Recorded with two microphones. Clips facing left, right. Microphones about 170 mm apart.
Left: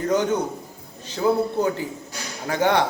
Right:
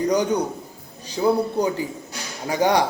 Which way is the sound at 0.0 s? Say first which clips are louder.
Right 1 dB; 15° right (ahead or behind).